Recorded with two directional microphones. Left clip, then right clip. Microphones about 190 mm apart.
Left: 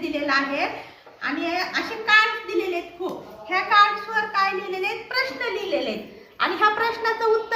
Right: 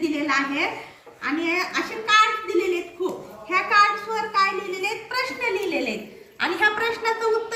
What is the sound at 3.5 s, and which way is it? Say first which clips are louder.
A woman's voice: left 1 dB; 35° left (ahead or behind).